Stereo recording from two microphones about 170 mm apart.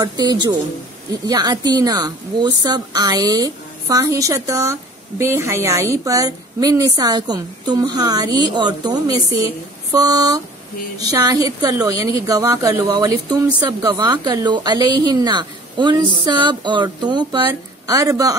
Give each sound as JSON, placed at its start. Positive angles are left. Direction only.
{"t": 0.0, "sound": "a woman's voice", "side_deg": -25}